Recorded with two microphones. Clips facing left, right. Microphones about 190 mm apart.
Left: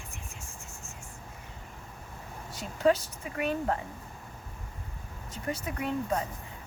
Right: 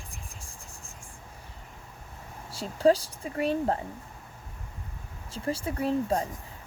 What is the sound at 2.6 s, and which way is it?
Speech, 30° right (ahead or behind).